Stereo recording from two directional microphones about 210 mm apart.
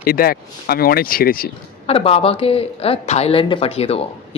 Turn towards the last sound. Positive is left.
turn(degrees=30)  # may be behind; listen again after turning